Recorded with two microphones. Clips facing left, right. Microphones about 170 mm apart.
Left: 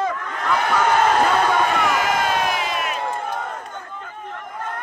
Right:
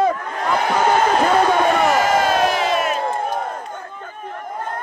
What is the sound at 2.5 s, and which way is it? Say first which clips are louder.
Crowd: right 6 dB; 35° right (ahead or behind).